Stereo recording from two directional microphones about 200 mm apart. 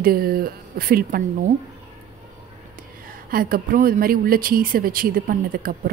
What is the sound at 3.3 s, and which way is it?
Speech, 45° right (ahead or behind).